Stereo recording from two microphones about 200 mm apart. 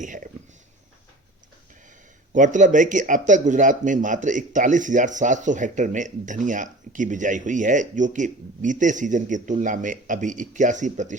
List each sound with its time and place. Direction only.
0.0 s speech: 40° right (ahead or behind)
2.3 s speech: 40° right (ahead or behind)